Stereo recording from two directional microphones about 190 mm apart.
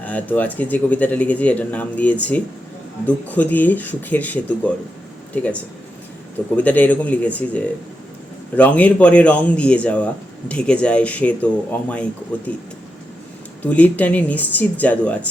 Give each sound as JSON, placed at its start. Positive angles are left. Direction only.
{"t": 0.0, "sound": "speech", "side_deg": 10}
{"t": 6.6, "sound": "speech", "side_deg": 10}